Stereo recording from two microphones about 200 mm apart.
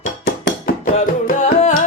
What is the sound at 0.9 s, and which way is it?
Music, 40° left (ahead or behind).